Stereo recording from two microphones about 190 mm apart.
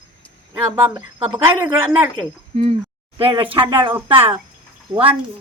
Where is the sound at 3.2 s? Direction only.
30° right (ahead or behind).